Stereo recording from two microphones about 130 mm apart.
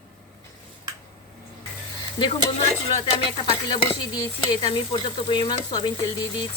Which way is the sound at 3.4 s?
40° left (ahead or behind).